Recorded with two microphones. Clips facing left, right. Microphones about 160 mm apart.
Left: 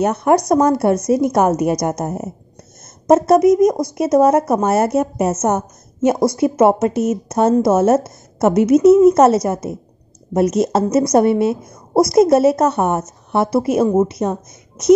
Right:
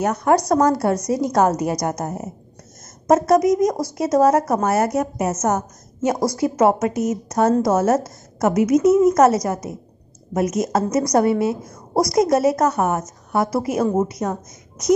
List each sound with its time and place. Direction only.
0.0 s a woman's voice: 25° left (ahead or behind)